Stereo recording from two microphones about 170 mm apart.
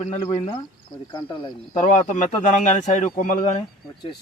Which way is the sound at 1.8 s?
45° left (ahead or behind).